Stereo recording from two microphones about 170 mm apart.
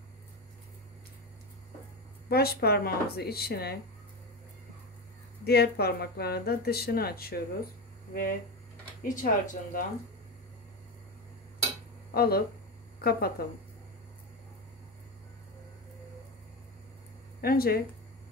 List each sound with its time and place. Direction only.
2.2 s speech: 65° left (ahead or behind)
5.4 s speech: 70° left (ahead or behind)
8.1 s speech: 55° left (ahead or behind)
12.1 s speech: 65° left (ahead or behind)
17.4 s speech: 60° left (ahead or behind)